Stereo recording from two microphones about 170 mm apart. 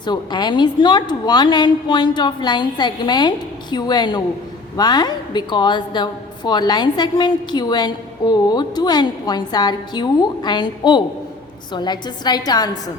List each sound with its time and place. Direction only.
0.0 s a woman's voice: 25° left (ahead or behind)